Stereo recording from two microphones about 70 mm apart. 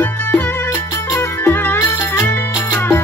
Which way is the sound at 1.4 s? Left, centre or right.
Left.